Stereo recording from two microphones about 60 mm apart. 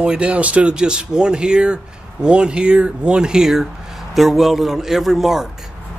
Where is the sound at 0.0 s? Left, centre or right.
Centre.